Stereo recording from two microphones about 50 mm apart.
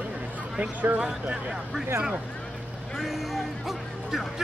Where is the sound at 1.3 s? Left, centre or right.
Centre.